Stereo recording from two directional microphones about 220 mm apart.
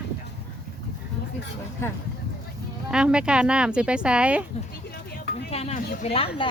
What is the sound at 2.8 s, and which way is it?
Speech, 5° right (ahead or behind).